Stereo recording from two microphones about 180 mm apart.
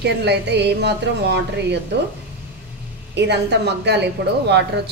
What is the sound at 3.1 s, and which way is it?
A woman's voice, 75° right (ahead or behind).